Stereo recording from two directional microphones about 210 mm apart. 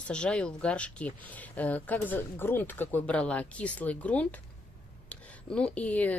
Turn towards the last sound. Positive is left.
turn(degrees=5)  # may be behind; listen again after turning